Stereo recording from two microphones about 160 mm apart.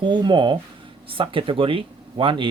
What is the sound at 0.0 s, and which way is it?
Speech, 30° right (ahead or behind).